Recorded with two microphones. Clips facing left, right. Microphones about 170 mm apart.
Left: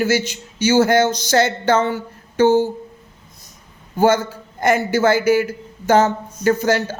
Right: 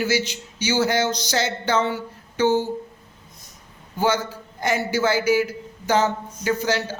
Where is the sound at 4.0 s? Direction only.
50° left (ahead or behind).